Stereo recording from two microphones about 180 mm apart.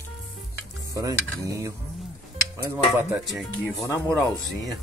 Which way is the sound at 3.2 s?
Centre (ahead or behind).